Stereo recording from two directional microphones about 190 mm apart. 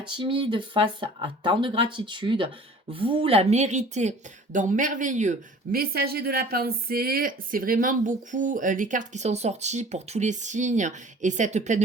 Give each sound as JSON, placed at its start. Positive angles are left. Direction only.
{"t": 0.1, "sound": "a woman's voice", "side_deg": -25}